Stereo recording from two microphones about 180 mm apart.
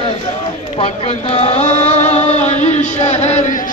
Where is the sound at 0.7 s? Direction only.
35° left (ahead or behind).